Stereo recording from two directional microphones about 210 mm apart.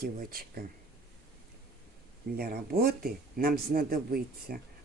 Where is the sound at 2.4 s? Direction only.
45° right (ahead or behind).